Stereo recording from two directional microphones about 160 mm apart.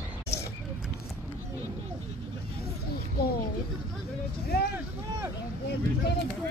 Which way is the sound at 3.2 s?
80° left.